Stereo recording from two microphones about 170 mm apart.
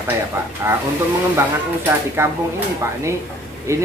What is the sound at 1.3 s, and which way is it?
Speech, 15° right (ahead or behind).